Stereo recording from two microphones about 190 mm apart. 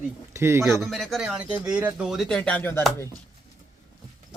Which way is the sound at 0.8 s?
Centre (ahead or behind).